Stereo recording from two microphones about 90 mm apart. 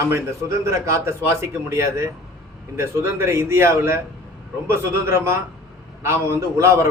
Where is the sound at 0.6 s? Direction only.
35° right (ahead or behind).